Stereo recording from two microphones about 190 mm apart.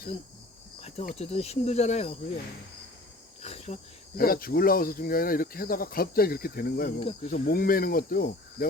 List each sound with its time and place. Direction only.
0.8 s cricket: 35° left (ahead or behind)
1.2 s speech: 35° left (ahead or behind)
3.4 s cricket: 35° left (ahead or behind)
4.2 s speech: 50° left (ahead or behind)
7.0 s speech: 35° left (ahead or behind); by 8.6 s 50° left (ahead or behind)